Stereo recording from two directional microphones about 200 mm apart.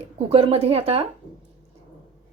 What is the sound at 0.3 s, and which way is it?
Speech, 30° right (ahead or behind).